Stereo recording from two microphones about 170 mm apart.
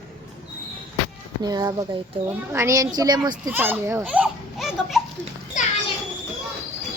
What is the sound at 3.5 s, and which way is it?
A child's voice, 10° right (ahead or behind).